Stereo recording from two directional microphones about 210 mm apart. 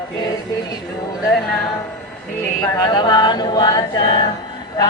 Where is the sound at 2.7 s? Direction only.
20° left (ahead or behind).